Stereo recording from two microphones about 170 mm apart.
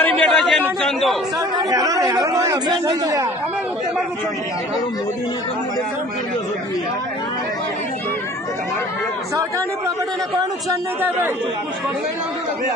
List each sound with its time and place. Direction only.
0.0 s speech: 5° left (ahead or behind)
1.4 s speech: 20° right (ahead or behind)
9.3 s speech: 20° right (ahead or behind)